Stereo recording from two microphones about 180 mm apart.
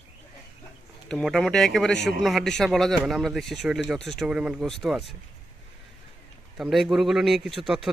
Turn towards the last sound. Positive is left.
turn(degrees=0)  # may be behind; listen again after turning